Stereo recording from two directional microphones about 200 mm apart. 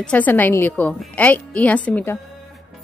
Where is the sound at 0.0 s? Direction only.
10° left (ahead or behind).